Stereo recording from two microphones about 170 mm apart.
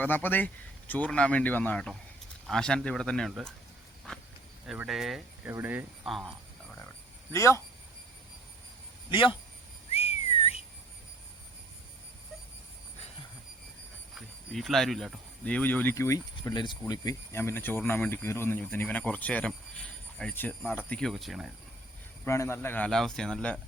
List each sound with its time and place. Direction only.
0.0 s speech: 10° left (ahead or behind)
4.6 s speech: 5° right (ahead or behind)
5.5 s speech: 15° right (ahead or behind)
6.1 s a sound: centre (ahead or behind)
7.3 s speech: 15° left (ahead or behind)
9.0 s speech: 30° left (ahead or behind)
9.9 s whistling: 35° left (ahead or behind)
14.2 s speech: centre (ahead or behind)
22.2 s speech: 15° left (ahead or behind)